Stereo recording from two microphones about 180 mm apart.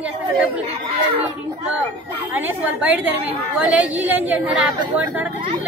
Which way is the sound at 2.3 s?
10° right (ahead or behind).